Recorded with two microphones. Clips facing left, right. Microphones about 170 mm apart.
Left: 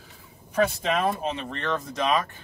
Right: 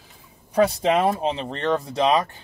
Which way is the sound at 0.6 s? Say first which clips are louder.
Right 5 dB; 35° right (ahead or behind).